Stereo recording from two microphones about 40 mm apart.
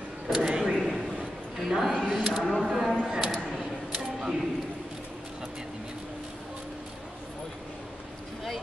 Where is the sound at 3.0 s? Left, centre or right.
Right.